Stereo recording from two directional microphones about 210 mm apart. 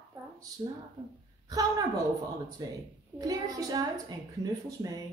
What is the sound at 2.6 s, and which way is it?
A woman's voice, 20° right (ahead or behind).